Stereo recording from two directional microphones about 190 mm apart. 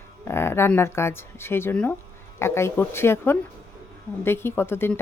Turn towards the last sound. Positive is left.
turn(degrees=10)  # may be behind; listen again after turning